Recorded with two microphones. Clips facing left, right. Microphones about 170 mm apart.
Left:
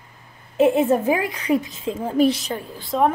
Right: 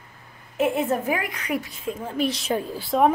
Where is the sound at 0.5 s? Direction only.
25° left (ahead or behind).